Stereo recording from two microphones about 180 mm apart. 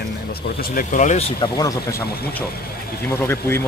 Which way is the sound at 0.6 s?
45° left (ahead or behind).